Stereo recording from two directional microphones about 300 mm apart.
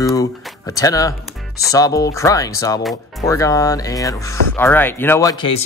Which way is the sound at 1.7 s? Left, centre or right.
Centre.